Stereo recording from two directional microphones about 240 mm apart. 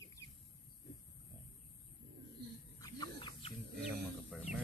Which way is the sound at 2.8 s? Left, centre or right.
Centre.